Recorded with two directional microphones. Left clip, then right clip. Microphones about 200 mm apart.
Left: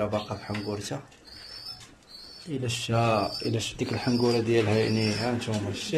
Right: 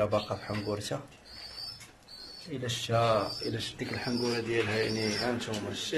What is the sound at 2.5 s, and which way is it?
Speech, centre (ahead or behind).